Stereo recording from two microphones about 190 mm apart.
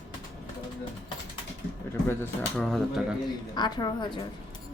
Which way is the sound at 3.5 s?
20° left (ahead or behind).